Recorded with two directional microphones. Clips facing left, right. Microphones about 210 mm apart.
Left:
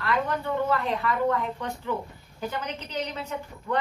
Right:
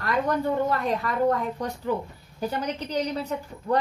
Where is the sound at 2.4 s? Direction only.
35° right (ahead or behind).